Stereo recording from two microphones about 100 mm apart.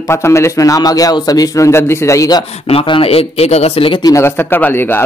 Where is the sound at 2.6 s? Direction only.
65° left (ahead or behind).